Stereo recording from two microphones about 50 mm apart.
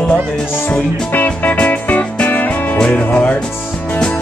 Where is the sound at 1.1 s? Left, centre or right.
Left.